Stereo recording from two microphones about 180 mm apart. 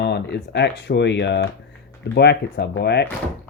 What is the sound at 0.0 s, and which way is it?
Speech, 70° left (ahead or behind).